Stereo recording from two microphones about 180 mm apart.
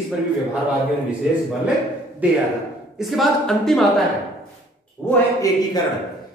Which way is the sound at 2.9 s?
Centre (ahead or behind).